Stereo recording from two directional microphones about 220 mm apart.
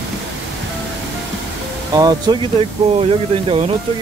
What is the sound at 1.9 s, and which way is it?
Speech, 20° right (ahead or behind).